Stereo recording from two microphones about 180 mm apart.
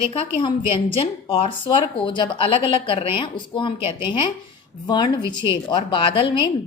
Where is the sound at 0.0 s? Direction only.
30° left (ahead or behind).